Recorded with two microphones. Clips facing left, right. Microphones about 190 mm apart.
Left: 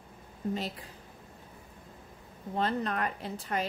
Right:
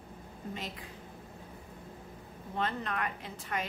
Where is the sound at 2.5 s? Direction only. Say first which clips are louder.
Left 4 dB; 35° left (ahead or behind).